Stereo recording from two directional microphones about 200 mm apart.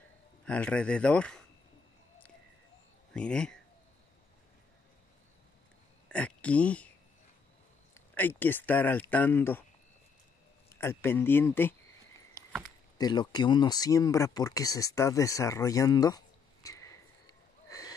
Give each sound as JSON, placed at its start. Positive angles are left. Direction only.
{"t": 0.5, "sound": "speech", "side_deg": 5}
{"t": 3.1, "sound": "speech", "side_deg": 5}
{"t": 6.0, "sound": "speech", "side_deg": 5}
{"t": 7.9, "sound": "speech", "side_deg": 10}
{"t": 10.8, "sound": "speech", "side_deg": 10}
{"t": 12.9, "sound": "speech", "side_deg": 20}
{"t": 17.6, "sound": "a sound", "side_deg": 15}